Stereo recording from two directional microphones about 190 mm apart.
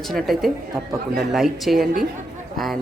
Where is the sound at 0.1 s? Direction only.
Centre (ahead or behind).